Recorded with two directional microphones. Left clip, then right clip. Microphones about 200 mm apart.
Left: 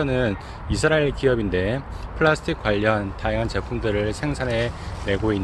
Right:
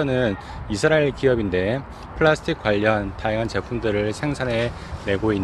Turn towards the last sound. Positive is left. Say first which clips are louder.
# right 1 dB
turn(degrees=-20)  # may be behind; listen again after turning